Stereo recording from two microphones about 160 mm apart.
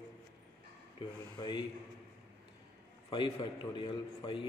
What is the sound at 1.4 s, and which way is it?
Speech, 30° left (ahead or behind).